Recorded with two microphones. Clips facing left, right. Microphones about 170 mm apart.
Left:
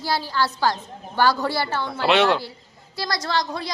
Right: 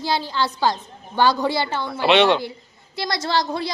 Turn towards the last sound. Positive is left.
turn(degrees=-30)  # may be behind; listen again after turning